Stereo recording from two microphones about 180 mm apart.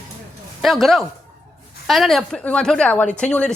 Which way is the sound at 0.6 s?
Centre (ahead or behind).